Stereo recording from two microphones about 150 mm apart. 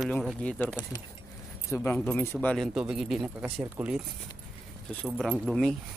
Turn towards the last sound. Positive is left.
turn(degrees=0)  # may be behind; listen again after turning